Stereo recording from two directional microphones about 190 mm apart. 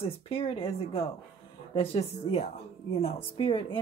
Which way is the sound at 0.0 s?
30° left (ahead or behind).